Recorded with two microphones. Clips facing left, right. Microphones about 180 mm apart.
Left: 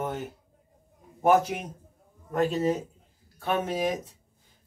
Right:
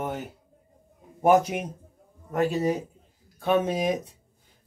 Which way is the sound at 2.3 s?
10° right (ahead or behind).